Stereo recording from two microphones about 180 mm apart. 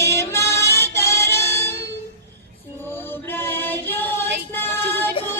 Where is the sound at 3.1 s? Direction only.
10° left (ahead or behind).